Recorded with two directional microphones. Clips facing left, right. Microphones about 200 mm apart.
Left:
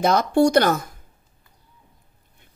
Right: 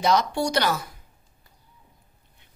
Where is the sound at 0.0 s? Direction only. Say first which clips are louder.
Left 5 dB; 50° left (ahead or behind).